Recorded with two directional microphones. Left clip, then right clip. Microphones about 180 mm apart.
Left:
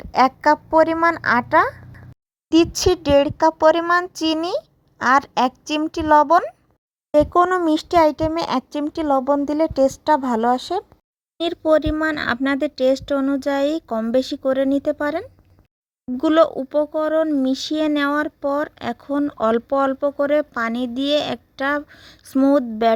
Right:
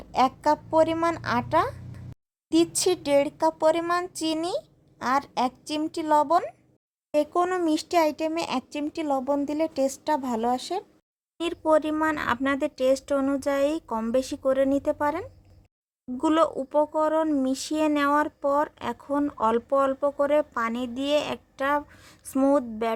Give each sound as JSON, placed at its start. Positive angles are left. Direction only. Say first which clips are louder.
{"t": 0.0, "sound": "speech", "louder": "left 7 dB", "side_deg": 30}